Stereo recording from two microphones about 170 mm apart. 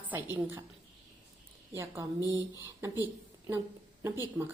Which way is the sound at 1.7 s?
15° right (ahead or behind).